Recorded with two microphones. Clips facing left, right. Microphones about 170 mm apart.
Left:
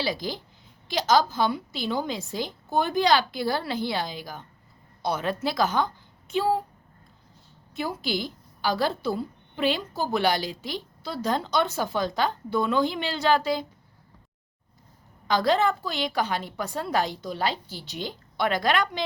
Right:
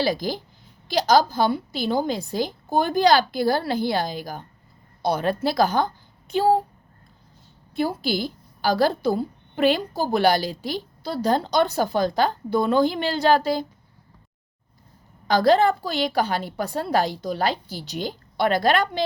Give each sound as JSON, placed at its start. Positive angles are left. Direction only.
{"t": 0.0, "sound": "a woman's voice", "side_deg": -45}
{"t": 7.8, "sound": "a woman's voice", "side_deg": -35}
{"t": 15.3, "sound": "a woman's voice", "side_deg": -35}